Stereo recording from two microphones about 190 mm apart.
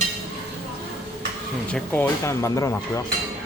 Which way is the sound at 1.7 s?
5° left (ahead or behind).